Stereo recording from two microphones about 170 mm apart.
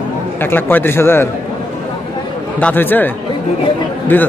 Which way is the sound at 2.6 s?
10° left (ahead or behind).